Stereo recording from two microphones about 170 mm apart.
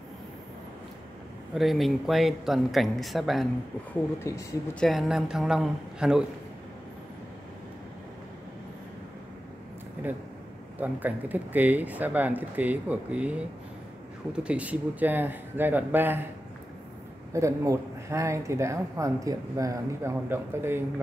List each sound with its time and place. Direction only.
1.5 s speech: centre (ahead or behind)
4.2 s speech: 15° left (ahead or behind)
4.7 s speech: centre (ahead or behind)
10.0 s speech: 10° right (ahead or behind)
17.3 s speech: 15° right (ahead or behind)